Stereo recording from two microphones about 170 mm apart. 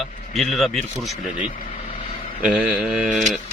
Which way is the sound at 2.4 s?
5° right (ahead or behind).